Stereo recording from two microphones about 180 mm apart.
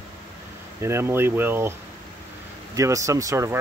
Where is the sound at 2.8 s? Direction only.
15° right (ahead or behind).